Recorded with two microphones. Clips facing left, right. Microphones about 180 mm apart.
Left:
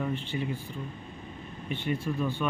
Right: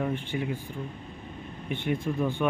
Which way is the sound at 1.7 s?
15° right (ahead or behind).